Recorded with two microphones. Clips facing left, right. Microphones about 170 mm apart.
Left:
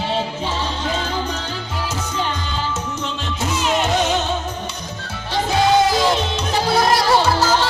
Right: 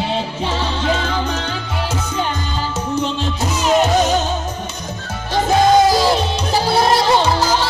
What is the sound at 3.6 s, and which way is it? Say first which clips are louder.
Music: right 5 dB; 40° right (ahead or behind).